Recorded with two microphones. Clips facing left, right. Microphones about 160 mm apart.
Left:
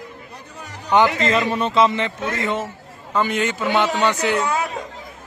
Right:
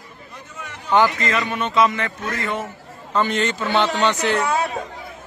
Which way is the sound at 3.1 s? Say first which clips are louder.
Even; 10° left (ahead or behind).